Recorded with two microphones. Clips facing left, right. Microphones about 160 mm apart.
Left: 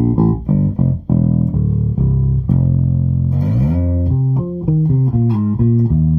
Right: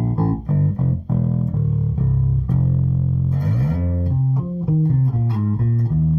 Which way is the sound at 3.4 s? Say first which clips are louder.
Left 6 dB; 20° left (ahead or behind).